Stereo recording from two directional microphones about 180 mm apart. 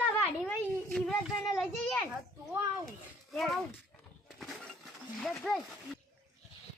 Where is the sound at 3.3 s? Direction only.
Centre (ahead or behind).